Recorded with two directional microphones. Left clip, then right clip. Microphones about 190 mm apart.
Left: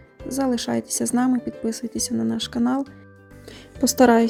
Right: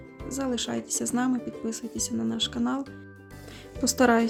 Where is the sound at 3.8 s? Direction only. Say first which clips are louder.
Left 6 dB; 25° left (ahead or behind).